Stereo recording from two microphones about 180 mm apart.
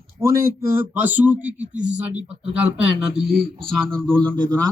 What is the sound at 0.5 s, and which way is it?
Speech, 10° right (ahead or behind).